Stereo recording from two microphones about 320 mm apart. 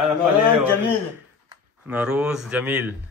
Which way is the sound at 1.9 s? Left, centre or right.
Centre.